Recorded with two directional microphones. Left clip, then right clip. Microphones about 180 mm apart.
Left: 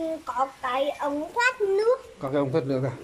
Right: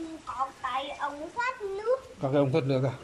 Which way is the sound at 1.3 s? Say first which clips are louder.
Left 11 dB; 60° left (ahead or behind).